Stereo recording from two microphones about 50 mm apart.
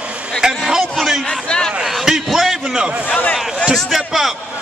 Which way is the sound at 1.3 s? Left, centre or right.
Centre.